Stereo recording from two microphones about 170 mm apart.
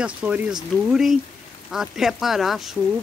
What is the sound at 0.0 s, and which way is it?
Speech, 5° right (ahead or behind).